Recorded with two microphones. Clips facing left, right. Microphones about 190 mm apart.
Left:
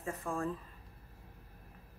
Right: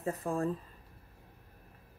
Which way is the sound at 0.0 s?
35° right (ahead or behind).